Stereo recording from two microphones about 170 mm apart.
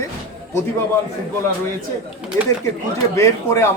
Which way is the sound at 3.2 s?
15° left (ahead or behind).